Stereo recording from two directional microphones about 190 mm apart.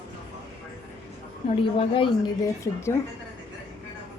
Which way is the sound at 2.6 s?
15° left (ahead or behind).